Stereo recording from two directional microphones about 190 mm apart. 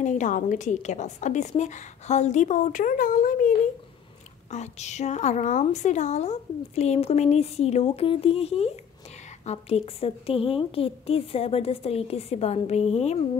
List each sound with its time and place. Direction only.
0.0 s a woman's voice: 40° left (ahead or behind)